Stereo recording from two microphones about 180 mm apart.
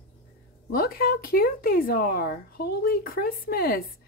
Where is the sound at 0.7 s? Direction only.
55° left (ahead or behind).